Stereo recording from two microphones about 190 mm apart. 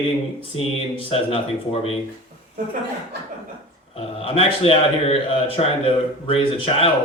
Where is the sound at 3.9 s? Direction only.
30° left (ahead or behind).